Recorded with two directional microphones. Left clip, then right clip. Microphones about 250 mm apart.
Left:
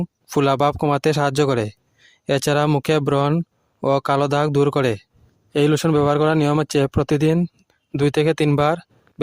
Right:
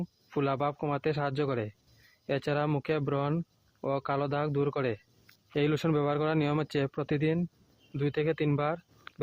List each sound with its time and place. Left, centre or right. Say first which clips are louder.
0.0 s speech: left 12 dB; left